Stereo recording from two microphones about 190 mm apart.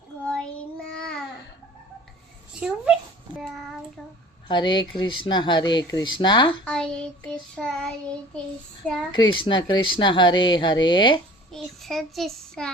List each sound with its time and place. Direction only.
0.9 s babbling: 5° left (ahead or behind)
2.6 s a sound: 5° right (ahead or behind)
4.4 s speech: 25° left (ahead or behind)
6.7 s child singing: 5° left (ahead or behind)
9.1 s speech: 25° left (ahead or behind)
11.5 s child singing: centre (ahead or behind)